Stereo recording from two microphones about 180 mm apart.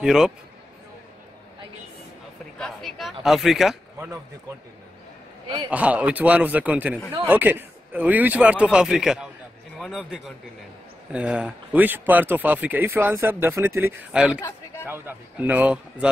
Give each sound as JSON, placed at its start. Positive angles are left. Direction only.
{"t": 0.0, "sound": "a man's voice", "side_deg": -5}
{"t": 2.6, "sound": "speech", "side_deg": 0}
{"t": 5.7, "sound": "a man's voice", "side_deg": -5}